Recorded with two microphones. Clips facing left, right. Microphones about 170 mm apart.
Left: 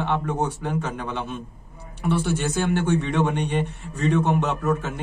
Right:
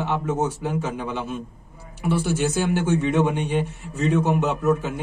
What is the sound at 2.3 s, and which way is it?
A man's voice, 5° right (ahead or behind).